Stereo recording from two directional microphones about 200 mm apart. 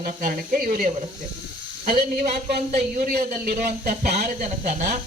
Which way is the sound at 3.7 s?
50° right (ahead or behind).